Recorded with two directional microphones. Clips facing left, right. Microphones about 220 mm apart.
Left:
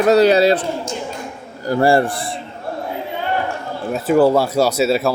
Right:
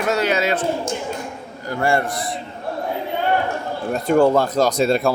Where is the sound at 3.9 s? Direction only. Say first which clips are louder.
Left 2 dB; 5° left (ahead or behind).